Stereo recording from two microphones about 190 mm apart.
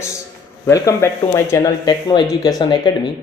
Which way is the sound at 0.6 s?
15° left (ahead or behind).